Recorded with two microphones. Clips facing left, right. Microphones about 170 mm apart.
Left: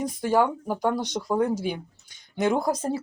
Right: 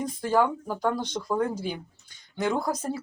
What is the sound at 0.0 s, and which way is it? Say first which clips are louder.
Speech: left 2 dB; 15° left (ahead or behind).